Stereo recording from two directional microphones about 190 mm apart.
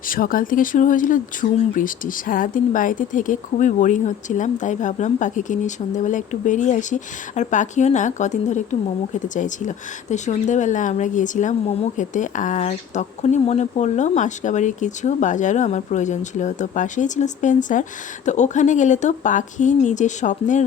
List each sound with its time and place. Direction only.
0.1 s speech: 45° left (ahead or behind)